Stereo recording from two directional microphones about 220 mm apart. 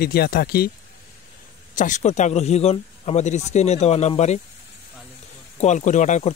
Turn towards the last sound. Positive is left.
turn(degrees=35)  # may be behind; listen again after turning